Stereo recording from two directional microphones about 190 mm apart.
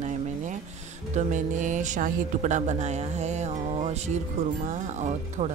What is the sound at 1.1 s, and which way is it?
Speech, 40° right (ahead or behind).